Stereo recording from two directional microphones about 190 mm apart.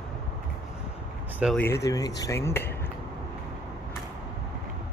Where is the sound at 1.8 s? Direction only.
20° left (ahead or behind).